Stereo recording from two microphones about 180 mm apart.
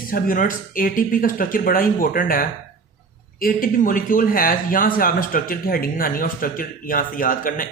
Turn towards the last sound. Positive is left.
turn(degrees=50)  # may be behind; listen again after turning